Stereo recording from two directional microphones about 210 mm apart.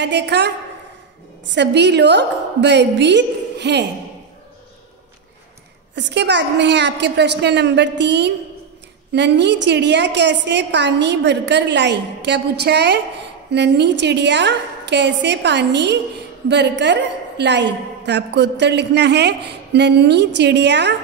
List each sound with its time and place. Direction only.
0.0 s a woman's voice: 55° right (ahead or behind)
5.9 s a woman's voice: 55° right (ahead or behind)